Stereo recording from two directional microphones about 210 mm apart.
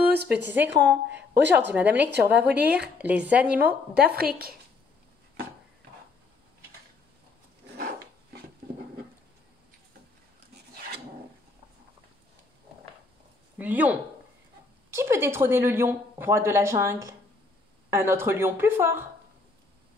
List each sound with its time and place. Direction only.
0.1 s a woman's voice: 50° right (ahead or behind)
1.8 s speech: 5° right (ahead or behind)
2.3 s speech: 50° right (ahead or behind)
3.0 s speech: 5° right (ahead or behind)
3.5 s speech: 50° right (ahead or behind)
13.6 s speech: 10° right (ahead or behind)
15.0 s speech: 10° right (ahead or behind)